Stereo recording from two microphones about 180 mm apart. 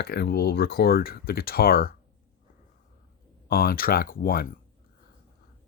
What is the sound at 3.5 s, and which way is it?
Speech, 55° left (ahead or behind).